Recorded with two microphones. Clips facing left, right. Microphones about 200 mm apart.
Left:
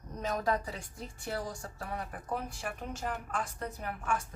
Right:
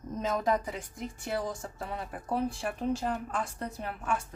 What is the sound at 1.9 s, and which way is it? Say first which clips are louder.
A woman's voice: right 3 dB; 30° right (ahead or behind).